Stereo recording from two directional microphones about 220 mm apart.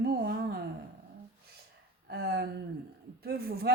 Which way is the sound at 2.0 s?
45° right (ahead or behind).